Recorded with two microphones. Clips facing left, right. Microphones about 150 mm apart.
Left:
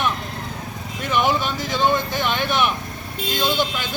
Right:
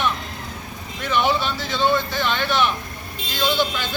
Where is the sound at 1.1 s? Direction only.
10° left (ahead or behind).